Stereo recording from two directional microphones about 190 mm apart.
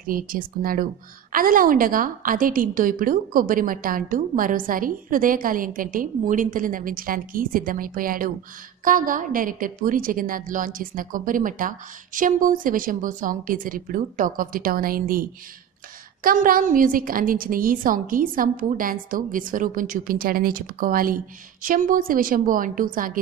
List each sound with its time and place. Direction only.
0.0 s a woman's voice: 50° right (ahead or behind)